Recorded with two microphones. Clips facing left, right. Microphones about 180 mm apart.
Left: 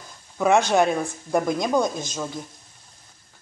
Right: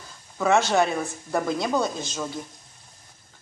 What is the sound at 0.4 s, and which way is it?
Speech, 15° left (ahead or behind).